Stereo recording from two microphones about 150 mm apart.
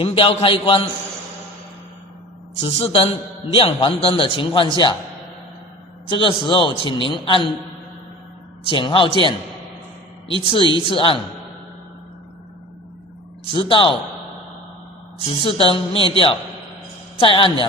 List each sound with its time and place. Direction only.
0.0 s a man's voice: 35° left (ahead or behind)
2.6 s a man's voice: 40° left (ahead or behind)
6.1 s a man's voice: 35° left (ahead or behind)
8.7 s a man's voice: 35° left (ahead or behind)
13.5 s a man's voice: 35° left (ahead or behind)
15.4 s a man's voice: 35° left (ahead or behind)